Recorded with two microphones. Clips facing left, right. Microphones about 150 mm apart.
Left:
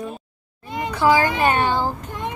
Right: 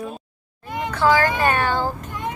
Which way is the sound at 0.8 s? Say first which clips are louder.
Left 1 dB; 15° left (ahead or behind).